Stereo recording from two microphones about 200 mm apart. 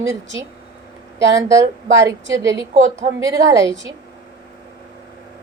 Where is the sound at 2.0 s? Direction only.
15° right (ahead or behind).